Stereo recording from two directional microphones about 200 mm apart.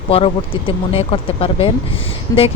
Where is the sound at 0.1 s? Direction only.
30° left (ahead or behind).